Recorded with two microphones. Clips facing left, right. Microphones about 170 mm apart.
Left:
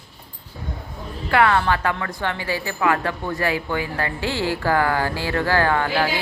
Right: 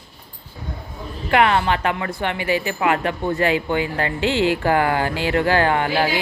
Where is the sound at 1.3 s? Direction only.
20° right (ahead or behind).